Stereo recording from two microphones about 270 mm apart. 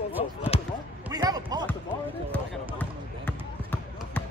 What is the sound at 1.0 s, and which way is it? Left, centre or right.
Speech, centre.